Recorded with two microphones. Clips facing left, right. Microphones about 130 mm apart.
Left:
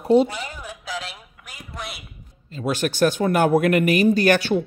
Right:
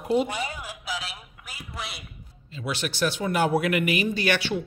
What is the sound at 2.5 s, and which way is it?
Speech, 45° left (ahead or behind).